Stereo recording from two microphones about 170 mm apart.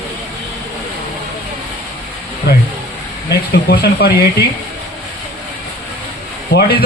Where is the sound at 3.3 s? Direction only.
70° left (ahead or behind).